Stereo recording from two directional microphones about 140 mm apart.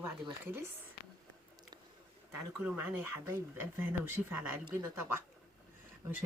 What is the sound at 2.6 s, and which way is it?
Speech, 15° right (ahead or behind).